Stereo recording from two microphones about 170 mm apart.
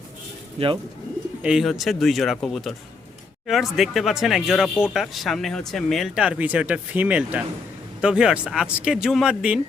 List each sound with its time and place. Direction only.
0.6 s speech: 35° right (ahead or behind)
1.4 s speech: 5° right (ahead or behind)